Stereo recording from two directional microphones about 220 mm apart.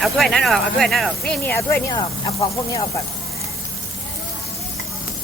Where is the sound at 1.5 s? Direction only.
15° left (ahead or behind).